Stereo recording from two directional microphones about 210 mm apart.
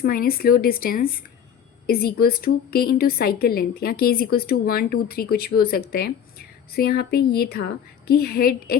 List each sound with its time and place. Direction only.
0.0 s a woman's voice: 45° left (ahead or behind)